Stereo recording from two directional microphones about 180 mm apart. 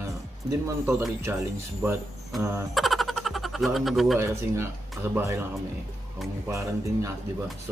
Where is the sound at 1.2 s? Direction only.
15° right (ahead or behind).